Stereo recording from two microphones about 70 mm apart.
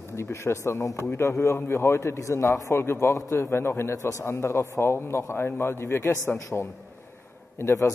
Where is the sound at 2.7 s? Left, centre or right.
Left.